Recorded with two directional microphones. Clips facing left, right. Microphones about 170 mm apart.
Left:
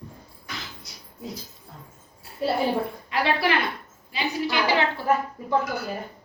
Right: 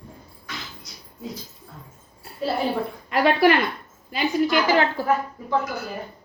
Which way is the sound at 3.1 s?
50° right (ahead or behind).